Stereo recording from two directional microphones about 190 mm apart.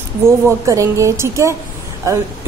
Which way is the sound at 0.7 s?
15° right (ahead or behind).